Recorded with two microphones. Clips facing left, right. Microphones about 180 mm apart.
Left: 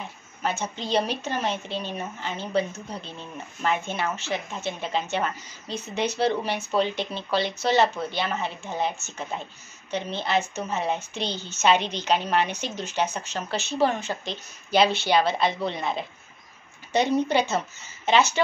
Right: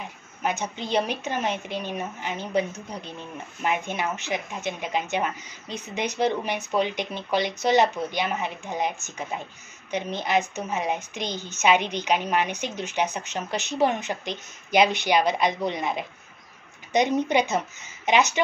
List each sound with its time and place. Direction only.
0.4 s speech: 15° right (ahead or behind)